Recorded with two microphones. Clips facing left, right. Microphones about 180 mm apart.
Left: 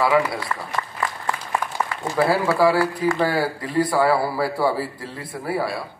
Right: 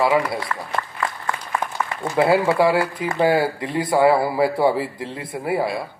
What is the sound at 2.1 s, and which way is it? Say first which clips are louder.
Speech: right 2 dB; 25° right (ahead or behind).